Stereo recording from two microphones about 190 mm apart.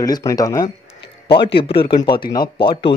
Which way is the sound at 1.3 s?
30° left (ahead or behind).